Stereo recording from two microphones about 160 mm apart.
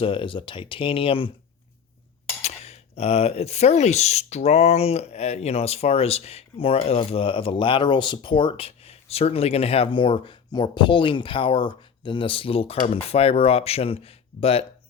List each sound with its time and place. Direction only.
0.0 s speech: 35° left (ahead or behind)
2.4 s speech: 40° left (ahead or behind)